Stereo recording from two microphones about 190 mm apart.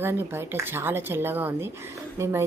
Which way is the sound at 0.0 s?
10° right (ahead or behind).